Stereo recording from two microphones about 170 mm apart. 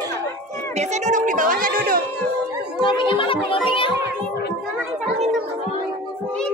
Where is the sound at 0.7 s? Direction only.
45° right (ahead or behind).